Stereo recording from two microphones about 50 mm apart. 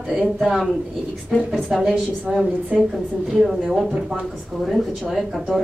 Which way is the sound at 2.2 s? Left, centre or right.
Centre.